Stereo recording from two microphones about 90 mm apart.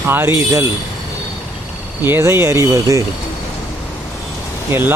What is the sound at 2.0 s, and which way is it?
Speech, 25° right (ahead or behind).